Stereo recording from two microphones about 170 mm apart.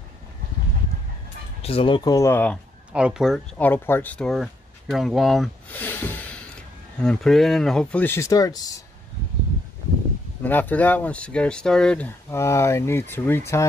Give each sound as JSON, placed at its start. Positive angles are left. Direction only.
{"t": 1.6, "sound": "speech", "side_deg": 35}
{"t": 2.9, "sound": "speech", "side_deg": -5}
{"t": 3.5, "sound": "speech", "side_deg": 10}
{"t": 5.7, "sound": "a sound", "side_deg": 10}
{"t": 7.0, "sound": "speech", "side_deg": 5}
{"t": 10.4, "sound": "speech", "side_deg": 10}
{"t": 12.3, "sound": "speech", "side_deg": 15}